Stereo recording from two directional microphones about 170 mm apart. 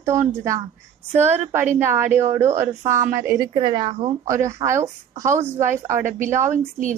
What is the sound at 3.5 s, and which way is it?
Speech, 30° right (ahead or behind).